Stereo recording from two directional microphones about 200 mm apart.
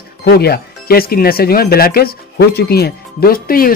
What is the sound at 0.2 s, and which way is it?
Speech, 50° left (ahead or behind).